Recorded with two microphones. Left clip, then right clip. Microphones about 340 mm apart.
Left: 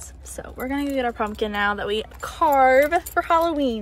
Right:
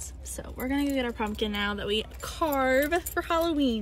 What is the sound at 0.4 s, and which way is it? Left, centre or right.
A woman's voice, centre.